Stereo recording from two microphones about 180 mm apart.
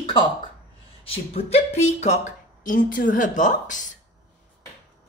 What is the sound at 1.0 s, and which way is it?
Speech, 35° left (ahead or behind).